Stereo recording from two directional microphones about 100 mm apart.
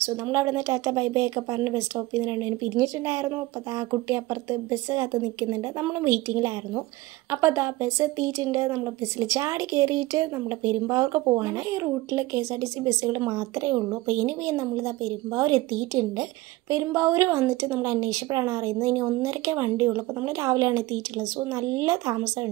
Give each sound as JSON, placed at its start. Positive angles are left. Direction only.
{"t": 0.0, "sound": "a woman's voice", "side_deg": -25}